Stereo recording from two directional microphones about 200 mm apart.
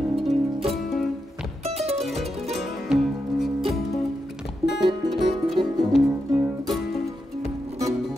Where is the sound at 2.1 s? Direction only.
Centre (ahead or behind).